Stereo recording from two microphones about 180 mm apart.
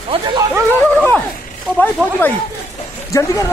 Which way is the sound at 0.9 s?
10° left (ahead or behind).